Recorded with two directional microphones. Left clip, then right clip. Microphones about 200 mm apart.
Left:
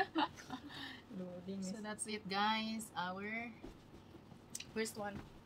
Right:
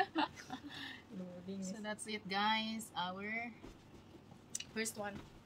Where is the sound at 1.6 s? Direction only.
5° right (ahead or behind).